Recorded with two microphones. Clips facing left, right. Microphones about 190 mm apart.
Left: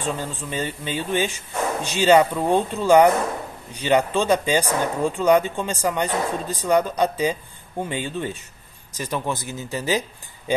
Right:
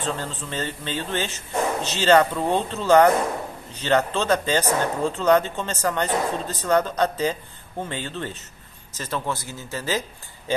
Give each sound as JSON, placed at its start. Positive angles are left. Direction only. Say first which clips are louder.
{"t": 0.0, "sound": "speech", "louder": "left 1 dB", "side_deg": 10}